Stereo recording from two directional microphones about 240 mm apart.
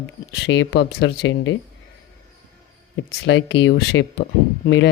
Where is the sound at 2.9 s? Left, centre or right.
Left.